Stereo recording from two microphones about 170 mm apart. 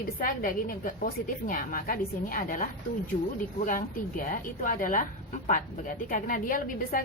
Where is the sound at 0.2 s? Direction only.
55° left (ahead or behind).